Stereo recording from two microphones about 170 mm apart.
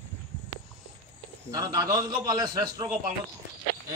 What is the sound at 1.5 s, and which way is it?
A man's voice, 20° right (ahead or behind).